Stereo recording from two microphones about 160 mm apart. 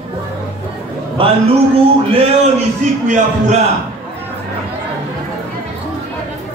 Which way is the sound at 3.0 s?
50° right (ahead or behind).